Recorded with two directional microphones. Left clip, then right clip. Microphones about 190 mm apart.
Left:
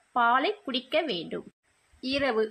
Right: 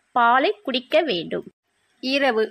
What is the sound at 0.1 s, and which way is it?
A woman's voice, 35° right (ahead or behind).